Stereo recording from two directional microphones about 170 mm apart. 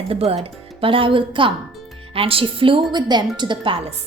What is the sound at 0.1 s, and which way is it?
A woman's voice, 35° right (ahead or behind).